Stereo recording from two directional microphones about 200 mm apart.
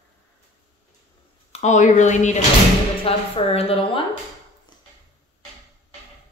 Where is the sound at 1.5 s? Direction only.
35° left (ahead or behind).